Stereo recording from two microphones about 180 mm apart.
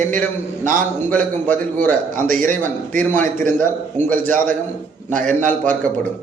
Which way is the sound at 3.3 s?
45° right (ahead or behind).